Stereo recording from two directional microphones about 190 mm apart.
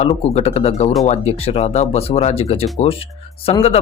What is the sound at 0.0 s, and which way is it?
Speech, 35° left (ahead or behind).